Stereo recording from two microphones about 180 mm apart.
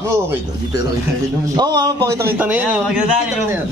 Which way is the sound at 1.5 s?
20° right (ahead or behind).